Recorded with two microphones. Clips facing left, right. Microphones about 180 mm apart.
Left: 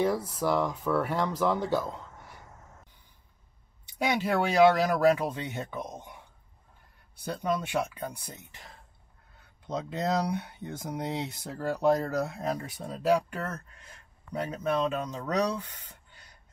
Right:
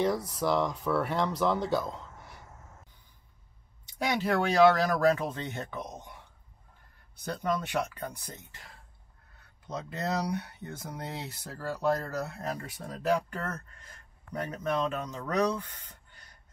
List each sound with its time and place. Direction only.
0.3 s speech: centre (ahead or behind)
4.0 s speech: 15° left (ahead or behind)
7.2 s speech: 10° left (ahead or behind)
9.8 s speech: 15° left (ahead or behind)